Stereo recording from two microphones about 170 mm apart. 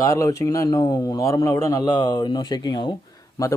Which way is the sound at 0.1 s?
20° left (ahead or behind).